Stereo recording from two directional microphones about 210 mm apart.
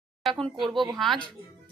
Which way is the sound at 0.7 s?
20° right (ahead or behind).